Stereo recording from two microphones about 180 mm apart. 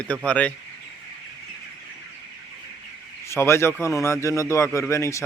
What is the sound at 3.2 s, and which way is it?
Speech, 15° left (ahead or behind).